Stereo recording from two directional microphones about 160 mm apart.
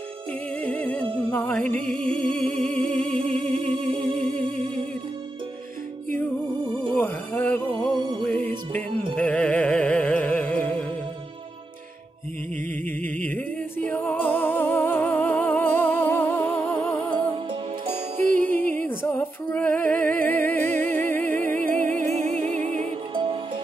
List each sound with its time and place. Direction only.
0.6 s music: 10° left (ahead or behind)
3.5 s music: 30° right (ahead or behind)
7.0 s music: 10° left (ahead or behind)
7.9 s music: 30° right (ahead or behind)
9.1 s music: 10° left (ahead or behind)
13.0 s music: 10° left (ahead or behind)
18.3 s music: 55° right (ahead or behind)
18.9 s music: 15° left (ahead or behind)
20.8 s music: 50° right (ahead or behind)